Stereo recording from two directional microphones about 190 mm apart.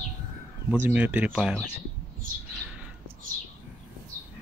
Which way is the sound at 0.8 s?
10° right (ahead or behind).